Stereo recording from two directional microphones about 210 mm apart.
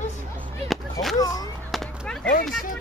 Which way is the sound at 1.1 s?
15° left (ahead or behind).